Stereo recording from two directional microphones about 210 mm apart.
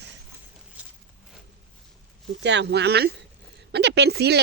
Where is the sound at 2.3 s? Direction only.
55° right (ahead or behind).